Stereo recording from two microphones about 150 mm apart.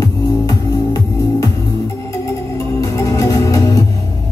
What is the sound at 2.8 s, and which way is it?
Music, 25° left (ahead or behind).